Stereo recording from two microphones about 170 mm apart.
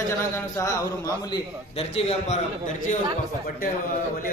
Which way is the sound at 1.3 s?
35° left (ahead or behind).